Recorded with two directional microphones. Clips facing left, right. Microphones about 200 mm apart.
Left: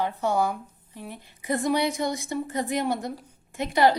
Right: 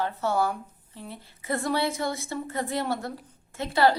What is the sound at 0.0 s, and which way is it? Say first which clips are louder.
A woman's voice: left 1 dB; 15° left (ahead or behind).